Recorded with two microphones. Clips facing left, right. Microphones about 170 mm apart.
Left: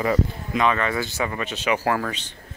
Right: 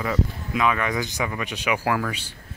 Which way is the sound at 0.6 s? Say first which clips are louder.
Left 1 dB; 15° right (ahead or behind).